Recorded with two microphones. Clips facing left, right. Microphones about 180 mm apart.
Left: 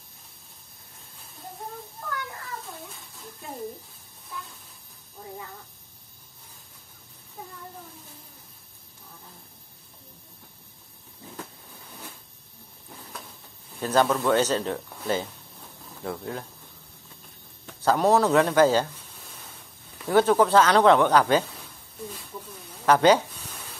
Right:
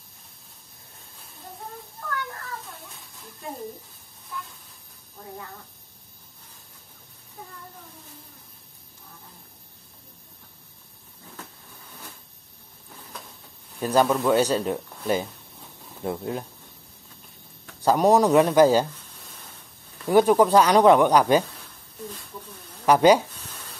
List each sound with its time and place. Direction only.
13.7 s speech: 10° right (ahead or behind)
17.8 s speech: 15° right (ahead or behind)
20.1 s speech: 15° right (ahead or behind)
22.8 s speech: 10° right (ahead or behind)
23.3 s a sound: 10° left (ahead or behind)